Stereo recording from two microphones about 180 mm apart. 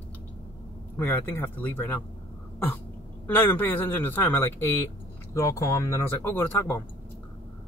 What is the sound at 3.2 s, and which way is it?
Speech, 10° left (ahead or behind).